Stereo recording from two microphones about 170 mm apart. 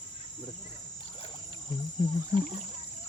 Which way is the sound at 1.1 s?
30° left (ahead or behind).